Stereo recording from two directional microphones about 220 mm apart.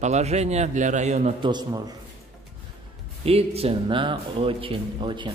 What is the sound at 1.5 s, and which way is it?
Speech, 20° right (ahead or behind).